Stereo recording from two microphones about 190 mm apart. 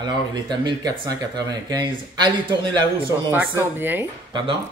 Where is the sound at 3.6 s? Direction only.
10° right (ahead or behind).